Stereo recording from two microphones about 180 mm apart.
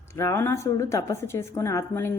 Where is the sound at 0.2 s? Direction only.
15° left (ahead or behind).